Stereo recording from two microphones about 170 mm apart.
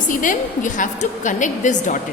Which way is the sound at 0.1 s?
50° left (ahead or behind).